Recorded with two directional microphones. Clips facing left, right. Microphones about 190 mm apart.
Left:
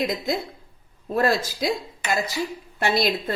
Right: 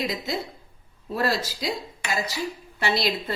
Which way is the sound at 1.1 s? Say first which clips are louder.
Left 4 dB; 50° left (ahead or behind).